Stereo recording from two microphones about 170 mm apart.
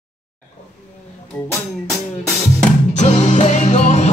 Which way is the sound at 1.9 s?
Centre (ahead or behind).